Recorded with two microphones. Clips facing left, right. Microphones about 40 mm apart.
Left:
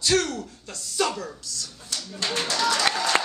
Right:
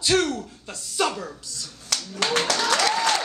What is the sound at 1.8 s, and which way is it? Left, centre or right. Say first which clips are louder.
Speech: right 5 dB; right.